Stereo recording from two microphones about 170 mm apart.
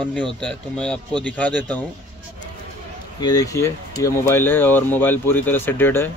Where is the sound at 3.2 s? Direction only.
20° left (ahead or behind).